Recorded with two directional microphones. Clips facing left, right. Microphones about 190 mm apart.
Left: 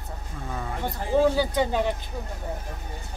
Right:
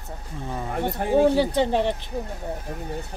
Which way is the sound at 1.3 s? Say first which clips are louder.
Right 3 dB; 30° right (ahead or behind).